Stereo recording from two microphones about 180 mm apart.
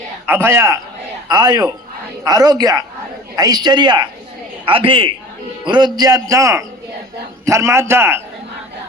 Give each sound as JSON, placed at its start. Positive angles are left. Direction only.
{"t": 0.3, "sound": "a man's voice", "side_deg": -15}